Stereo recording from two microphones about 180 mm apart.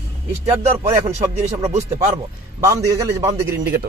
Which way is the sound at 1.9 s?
20° right (ahead or behind).